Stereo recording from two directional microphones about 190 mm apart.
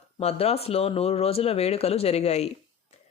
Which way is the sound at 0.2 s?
35° left (ahead or behind).